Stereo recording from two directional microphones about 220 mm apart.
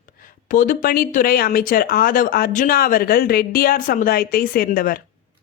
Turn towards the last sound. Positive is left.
turn(degrees=40)  # may be behind; listen again after turning